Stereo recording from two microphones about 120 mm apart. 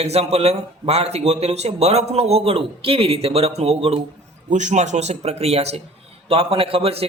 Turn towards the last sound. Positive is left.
turn(degrees=-55)  # may be behind; listen again after turning